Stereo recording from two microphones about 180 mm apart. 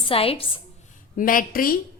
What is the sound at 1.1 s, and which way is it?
Speech, 50° left (ahead or behind).